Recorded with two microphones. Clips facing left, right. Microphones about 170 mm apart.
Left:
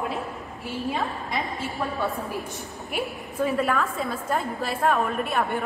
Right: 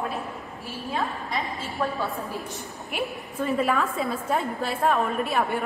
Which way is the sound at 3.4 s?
Centre (ahead or behind).